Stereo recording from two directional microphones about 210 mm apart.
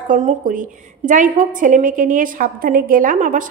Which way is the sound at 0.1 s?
35° right (ahead or behind).